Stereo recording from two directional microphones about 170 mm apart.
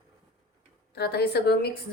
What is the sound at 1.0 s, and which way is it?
Speech, 70° left (ahead or behind).